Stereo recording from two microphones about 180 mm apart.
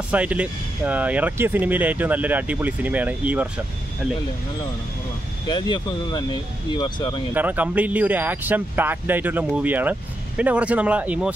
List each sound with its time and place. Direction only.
0.1 s speech: 5° right (ahead or behind)
5.5 s speech: 25° left (ahead or behind)
7.3 s speech: 10° right (ahead or behind)